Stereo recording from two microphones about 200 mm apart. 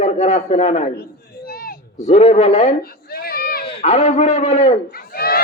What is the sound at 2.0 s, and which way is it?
Speech, 35° left (ahead or behind).